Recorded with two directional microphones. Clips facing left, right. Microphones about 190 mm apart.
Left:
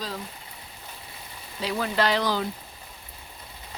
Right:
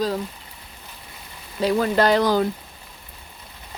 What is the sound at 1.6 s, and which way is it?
Speech, 45° right (ahead or behind).